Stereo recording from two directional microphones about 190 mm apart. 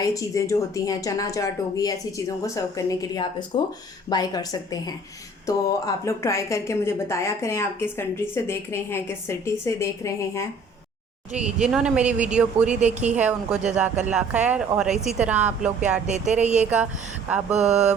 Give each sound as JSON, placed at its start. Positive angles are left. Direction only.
{"t": 0.0, "sound": "a woman's voice", "side_deg": 15}
{"t": 11.4, "sound": "speech", "side_deg": -5}
{"t": 16.0, "sound": "speech", "side_deg": -40}
{"t": 16.6, "sound": "speech", "side_deg": -5}
{"t": 17.5, "sound": "speech", "side_deg": -35}